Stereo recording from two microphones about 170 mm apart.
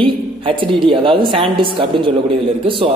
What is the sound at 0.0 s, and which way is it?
A woman's voice, 30° right (ahead or behind).